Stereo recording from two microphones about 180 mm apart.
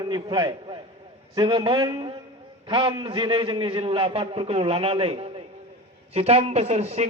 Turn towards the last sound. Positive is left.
turn(degrees=-35)  # may be behind; listen again after turning